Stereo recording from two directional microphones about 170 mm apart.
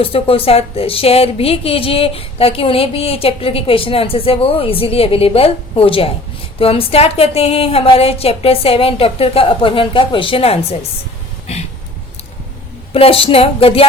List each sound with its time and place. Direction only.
0.0 s a woman's voice: 35° left (ahead or behind)
12.9 s a woman's voice: 35° left (ahead or behind)